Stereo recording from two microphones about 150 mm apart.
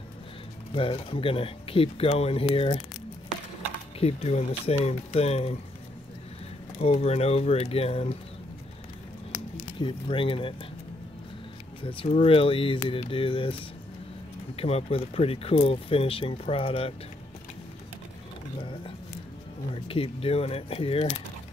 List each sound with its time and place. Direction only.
0.7 s speech: 35° left (ahead or behind)
4.0 s speech: 45° left (ahead or behind)
6.8 s speech: 45° left (ahead or behind)
9.8 s speech: 35° left (ahead or behind)
11.8 s speech: 35° left (ahead or behind)
14.6 s speech: 40° left (ahead or behind)
19.7 s speech: 40° left (ahead or behind)